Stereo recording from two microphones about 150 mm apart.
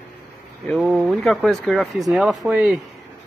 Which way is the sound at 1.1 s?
Centre (ahead or behind).